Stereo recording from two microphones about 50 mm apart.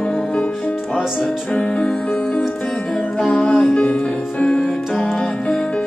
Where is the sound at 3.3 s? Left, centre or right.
Left.